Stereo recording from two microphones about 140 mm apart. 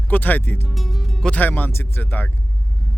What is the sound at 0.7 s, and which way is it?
Speech, centre (ahead or behind).